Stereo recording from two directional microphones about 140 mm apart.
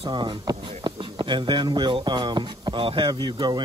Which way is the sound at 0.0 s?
35° right (ahead or behind).